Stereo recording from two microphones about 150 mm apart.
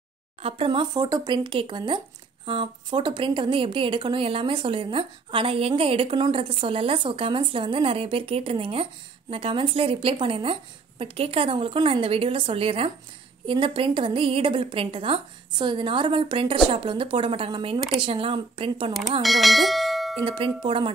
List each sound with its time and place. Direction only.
0.4 s a woman's voice: 40° right (ahead or behind)
19.2 s speech: centre (ahead or behind)
20.2 s a woman's voice: 35° right (ahead or behind)